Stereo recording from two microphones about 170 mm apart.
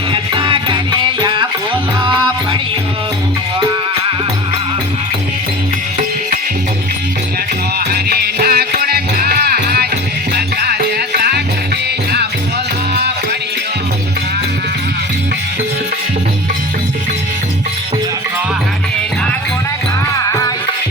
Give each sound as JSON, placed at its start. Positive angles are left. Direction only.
{"t": 0.1, "sound": "music", "side_deg": -30}
{"t": 7.9, "sound": "music", "side_deg": -70}